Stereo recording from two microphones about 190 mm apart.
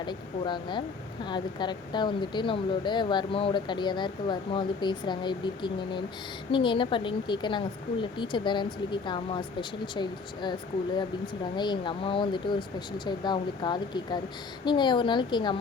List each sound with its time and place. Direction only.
0.0 s speech: 25° left (ahead or behind)